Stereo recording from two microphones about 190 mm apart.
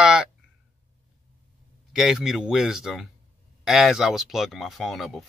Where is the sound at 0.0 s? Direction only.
5° right (ahead or behind).